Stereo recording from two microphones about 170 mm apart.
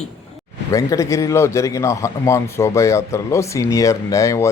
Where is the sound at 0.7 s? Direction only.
20° left (ahead or behind).